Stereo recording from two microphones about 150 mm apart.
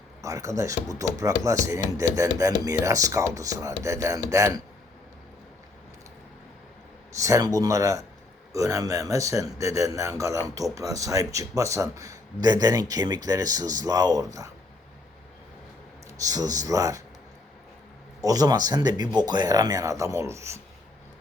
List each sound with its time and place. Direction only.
0.2 s speech: 20° right (ahead or behind)
7.2 s speech: 20° right (ahead or behind)
16.1 s speech: 25° right (ahead or behind)
18.2 s speech: 25° right (ahead or behind)